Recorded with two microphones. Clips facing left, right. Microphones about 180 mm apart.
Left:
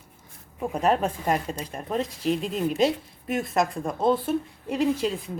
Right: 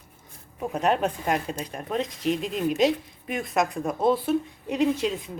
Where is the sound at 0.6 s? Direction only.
Centre (ahead or behind).